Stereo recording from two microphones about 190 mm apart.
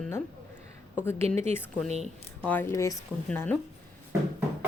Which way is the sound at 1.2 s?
35° right (ahead or behind).